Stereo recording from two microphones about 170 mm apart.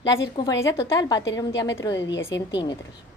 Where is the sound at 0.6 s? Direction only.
15° left (ahead or behind).